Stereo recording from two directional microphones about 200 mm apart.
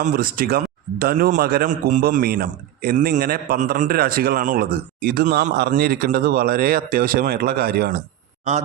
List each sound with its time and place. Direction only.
0.0 s a man's voice: 45° right (ahead or behind)